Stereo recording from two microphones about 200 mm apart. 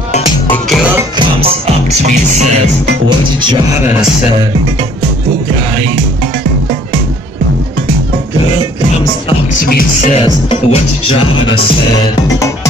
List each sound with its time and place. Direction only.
1.1 s music: 25° right (ahead or behind)
9.7 s music: 45° left (ahead or behind)
10.2 s music: 30° left (ahead or behind)